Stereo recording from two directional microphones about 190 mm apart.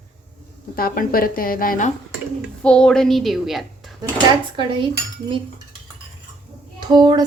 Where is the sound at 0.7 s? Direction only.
50° left (ahead or behind).